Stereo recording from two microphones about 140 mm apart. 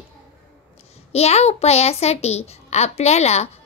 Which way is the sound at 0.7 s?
50° left (ahead or behind).